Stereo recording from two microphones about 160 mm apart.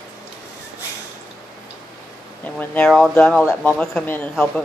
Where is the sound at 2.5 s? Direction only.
5° left (ahead or behind).